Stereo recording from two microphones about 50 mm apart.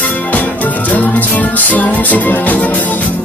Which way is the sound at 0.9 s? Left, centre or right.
Left.